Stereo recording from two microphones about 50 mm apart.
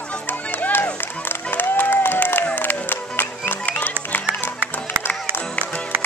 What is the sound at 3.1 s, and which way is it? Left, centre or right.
Music, left.